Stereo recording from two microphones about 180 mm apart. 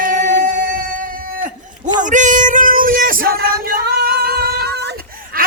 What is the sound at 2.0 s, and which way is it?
Music, 45° right (ahead or behind).